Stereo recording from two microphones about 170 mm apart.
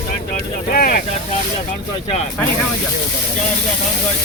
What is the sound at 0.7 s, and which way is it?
Vehicle, 60° left (ahead or behind).